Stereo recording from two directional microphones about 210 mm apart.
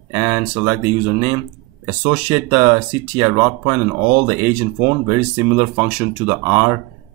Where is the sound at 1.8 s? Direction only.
10° right (ahead or behind).